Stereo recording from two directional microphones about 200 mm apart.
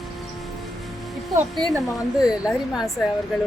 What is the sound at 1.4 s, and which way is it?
Speech, 15° right (ahead or behind).